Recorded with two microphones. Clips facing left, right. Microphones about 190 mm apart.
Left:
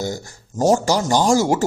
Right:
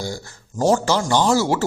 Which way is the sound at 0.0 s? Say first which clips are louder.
Left 3 dB; 20° left (ahead or behind).